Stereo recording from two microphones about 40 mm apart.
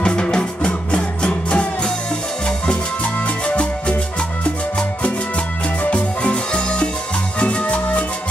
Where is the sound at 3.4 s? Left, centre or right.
Left.